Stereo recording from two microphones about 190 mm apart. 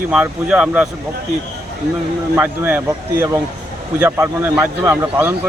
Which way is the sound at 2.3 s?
5° right (ahead or behind).